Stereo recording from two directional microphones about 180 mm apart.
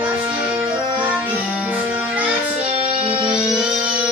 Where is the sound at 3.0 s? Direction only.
30° right (ahead or behind).